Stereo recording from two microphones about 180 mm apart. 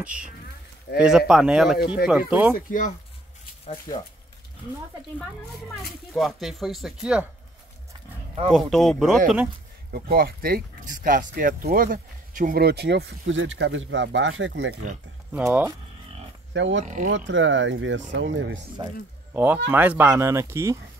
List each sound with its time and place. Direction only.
0.0 s speech: 5° right (ahead or behind)
3.9 s speech: 20° left (ahead or behind)
6.1 s speech: centre (ahead or behind)
8.5 s speech: centre (ahead or behind)
9.9 s speech: 60° right (ahead or behind)
13.3 s speech: 90° right
15.3 s speech: 10° right (ahead or behind)
16.5 s speech: 90° right
16.8 s speech: 45° right (ahead or behind)
17.3 s speech: 90° right
18.8 s speech: 25° right (ahead or behind)
19.3 s speech: 10° right (ahead or behind)